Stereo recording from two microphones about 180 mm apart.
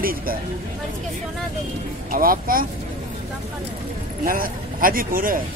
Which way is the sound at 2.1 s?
50° right (ahead or behind).